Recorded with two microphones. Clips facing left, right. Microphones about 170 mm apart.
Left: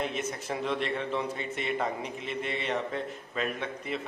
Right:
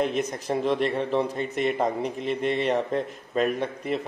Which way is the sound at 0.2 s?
40° right (ahead or behind).